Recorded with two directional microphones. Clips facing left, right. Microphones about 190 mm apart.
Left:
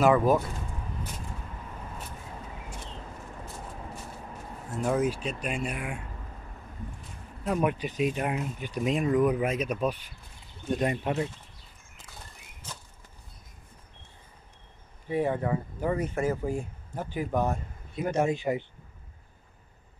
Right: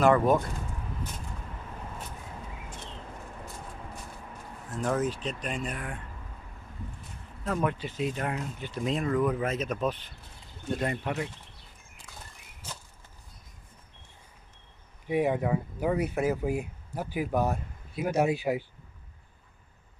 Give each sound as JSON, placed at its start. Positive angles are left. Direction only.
{"t": 0.0, "sound": "speech", "side_deg": 5}
{"t": 4.8, "sound": "speech", "side_deg": 10}
{"t": 7.4, "sound": "speech", "side_deg": 15}
{"t": 15.0, "sound": "speech", "side_deg": -10}